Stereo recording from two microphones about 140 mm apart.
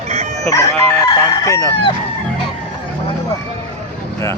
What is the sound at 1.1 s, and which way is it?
Chicken, 25° left (ahead or behind).